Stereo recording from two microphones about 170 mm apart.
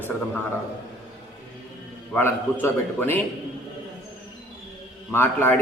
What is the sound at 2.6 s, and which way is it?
Speech, 10° left (ahead or behind).